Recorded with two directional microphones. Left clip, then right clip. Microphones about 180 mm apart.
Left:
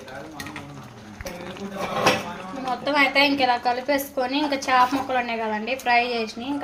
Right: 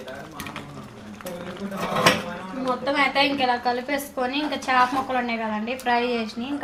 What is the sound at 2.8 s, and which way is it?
A woman's voice, 20° left (ahead or behind).